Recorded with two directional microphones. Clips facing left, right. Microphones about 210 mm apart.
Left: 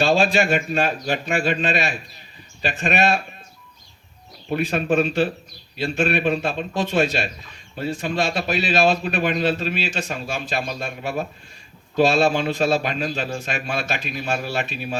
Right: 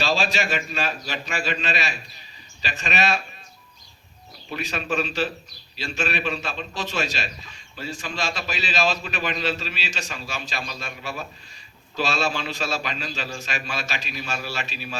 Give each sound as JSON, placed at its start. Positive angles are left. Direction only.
{"t": 0.0, "sound": "a man's voice", "side_deg": 55}
{"t": 4.5, "sound": "a man's voice", "side_deg": 55}